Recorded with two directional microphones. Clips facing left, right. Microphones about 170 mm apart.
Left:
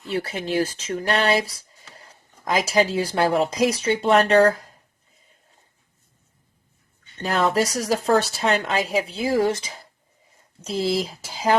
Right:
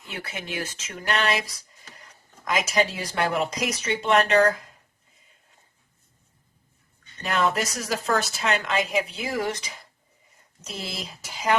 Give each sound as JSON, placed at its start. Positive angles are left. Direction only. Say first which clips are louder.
{"t": 0.1, "sound": "speech", "louder": "left 10 dB", "side_deg": 35}
{"t": 7.2, "sound": "speech", "louder": "left 4 dB", "side_deg": 35}